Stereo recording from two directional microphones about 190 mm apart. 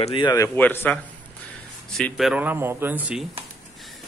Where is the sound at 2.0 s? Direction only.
Centre (ahead or behind).